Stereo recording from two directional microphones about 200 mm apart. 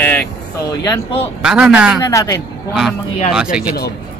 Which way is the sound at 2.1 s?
15° left (ahead or behind).